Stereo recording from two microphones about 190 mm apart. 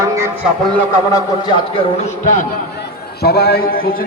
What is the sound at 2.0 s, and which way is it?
Speech, 40° left (ahead or behind).